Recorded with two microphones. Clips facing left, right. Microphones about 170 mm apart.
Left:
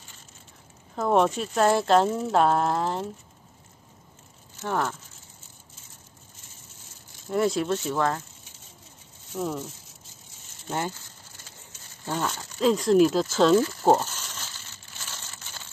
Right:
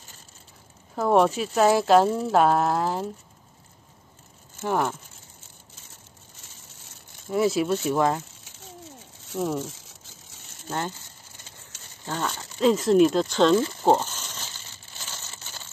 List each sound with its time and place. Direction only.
0.9 s speech: centre (ahead or behind)
4.6 s speech: 15° right (ahead or behind)
7.2 s speech: 5° right (ahead or behind)
9.3 s speech: 5° right (ahead or behind)
11.7 s a sound: 90° right
12.1 s speech: 5° left (ahead or behind)